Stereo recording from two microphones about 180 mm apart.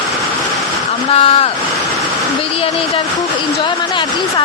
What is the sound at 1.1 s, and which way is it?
Speech, 30° left (ahead or behind).